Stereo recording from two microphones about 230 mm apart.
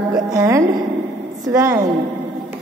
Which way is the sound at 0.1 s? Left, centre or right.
Centre.